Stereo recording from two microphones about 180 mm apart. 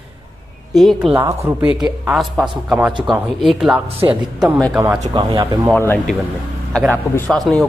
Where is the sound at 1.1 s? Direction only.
15° right (ahead or behind).